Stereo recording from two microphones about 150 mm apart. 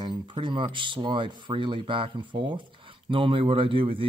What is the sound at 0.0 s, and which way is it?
Speech, 30° right (ahead or behind).